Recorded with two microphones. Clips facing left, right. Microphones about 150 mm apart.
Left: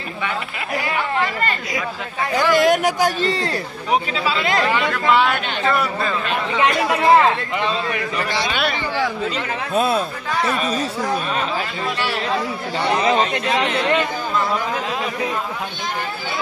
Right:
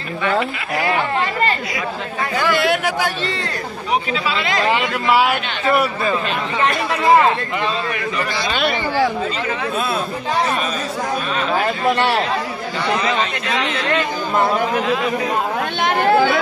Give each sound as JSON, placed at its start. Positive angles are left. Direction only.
{"t": 2.5, "sound": "speech", "side_deg": 45}
{"t": 4.7, "sound": "a man's voice", "side_deg": -10}
{"t": 11.5, "sound": "speech", "side_deg": -60}
{"t": 13.1, "sound": "speech", "side_deg": 40}
{"t": 15.3, "sound": "chatter", "side_deg": -65}